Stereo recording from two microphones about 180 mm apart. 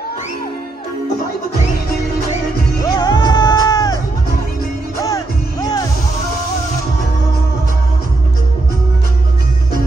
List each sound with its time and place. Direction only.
3.0 s music: 20° left (ahead or behind)
5.0 s music: 20° left (ahead or behind)